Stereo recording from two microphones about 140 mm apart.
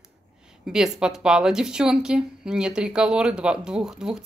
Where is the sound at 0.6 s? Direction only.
5° right (ahead or behind).